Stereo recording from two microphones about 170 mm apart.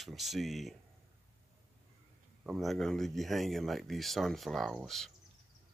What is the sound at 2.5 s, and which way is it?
Speech, centre (ahead or behind).